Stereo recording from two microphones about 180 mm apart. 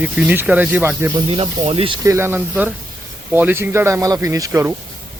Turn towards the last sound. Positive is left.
turn(degrees=-20)  # may be behind; listen again after turning